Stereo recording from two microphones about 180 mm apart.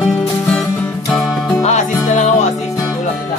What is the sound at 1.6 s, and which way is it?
Music, 40° left (ahead or behind).